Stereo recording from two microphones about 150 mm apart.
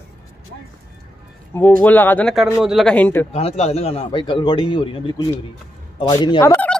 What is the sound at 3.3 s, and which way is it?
A man's voice, 40° left (ahead or behind).